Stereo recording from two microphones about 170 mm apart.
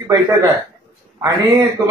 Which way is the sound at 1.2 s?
20° right (ahead or behind).